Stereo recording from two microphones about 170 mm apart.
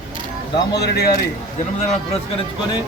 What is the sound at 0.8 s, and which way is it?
Speech, 65° left (ahead or behind).